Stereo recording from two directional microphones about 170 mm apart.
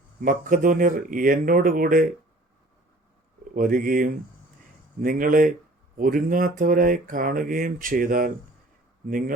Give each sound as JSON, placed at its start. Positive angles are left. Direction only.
{"t": 0.2, "sound": "speech", "side_deg": -55}
{"t": 3.5, "sound": "speech", "side_deg": -55}